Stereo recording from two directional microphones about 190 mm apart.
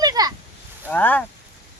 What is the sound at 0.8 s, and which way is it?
Speech, 10° left (ahead or behind).